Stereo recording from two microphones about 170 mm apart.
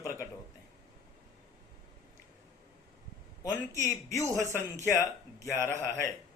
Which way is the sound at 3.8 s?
15° left (ahead or behind).